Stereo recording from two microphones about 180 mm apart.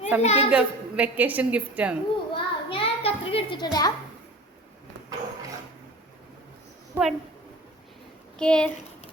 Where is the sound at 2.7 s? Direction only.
30° left (ahead or behind).